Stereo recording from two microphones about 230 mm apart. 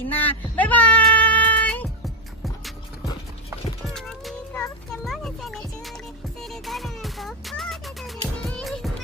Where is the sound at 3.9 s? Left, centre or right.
Centre.